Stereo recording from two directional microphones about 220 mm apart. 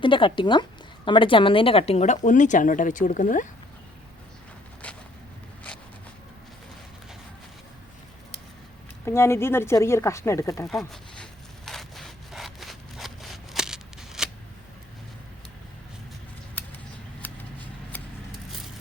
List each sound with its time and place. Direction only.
0.0 s speech: 20° left (ahead or behind)
9.0 s speech: 10° left (ahead or behind)
10.7 s sawing: centre (ahead or behind)
16.6 s a sound: 10° left (ahead or behind)